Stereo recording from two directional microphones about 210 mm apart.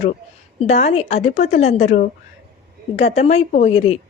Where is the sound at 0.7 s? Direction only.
30° left (ahead or behind).